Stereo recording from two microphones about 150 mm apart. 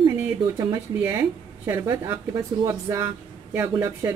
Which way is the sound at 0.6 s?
25° right (ahead or behind).